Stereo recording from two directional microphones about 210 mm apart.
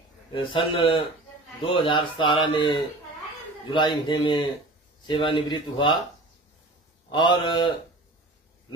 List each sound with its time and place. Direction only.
0.3 s speech: 25° left (ahead or behind)
7.1 s speech: 20° left (ahead or behind)